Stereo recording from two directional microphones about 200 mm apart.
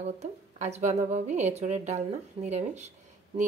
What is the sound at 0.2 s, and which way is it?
A woman's voice, 35° right (ahead or behind).